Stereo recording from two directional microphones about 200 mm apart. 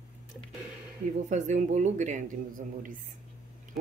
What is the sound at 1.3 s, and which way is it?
Speech, 35° right (ahead or behind).